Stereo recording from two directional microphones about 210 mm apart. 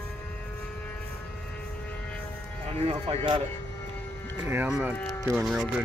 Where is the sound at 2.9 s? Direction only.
20° right (ahead or behind).